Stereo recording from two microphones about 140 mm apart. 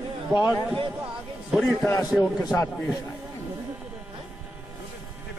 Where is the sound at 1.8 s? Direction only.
20° left (ahead or behind).